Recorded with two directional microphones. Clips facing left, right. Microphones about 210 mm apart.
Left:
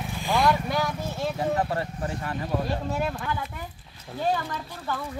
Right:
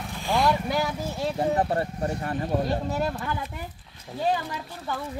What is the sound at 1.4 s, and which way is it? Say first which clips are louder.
Speech: right 3 dB; 30° right (ahead or behind).